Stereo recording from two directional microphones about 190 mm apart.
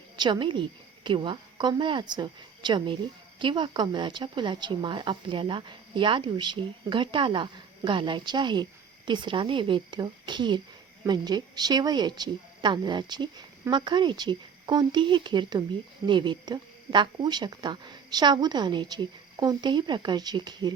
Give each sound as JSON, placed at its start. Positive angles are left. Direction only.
{"t": 0.2, "sound": "speech", "side_deg": -25}